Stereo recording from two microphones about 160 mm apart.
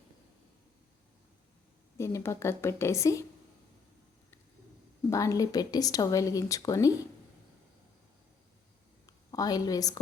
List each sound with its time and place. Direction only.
2.0 s a woman's voice: 15° left (ahead or behind)
5.0 s speech: 20° left (ahead or behind)
9.0 s a woman's voice: 25° left (ahead or behind)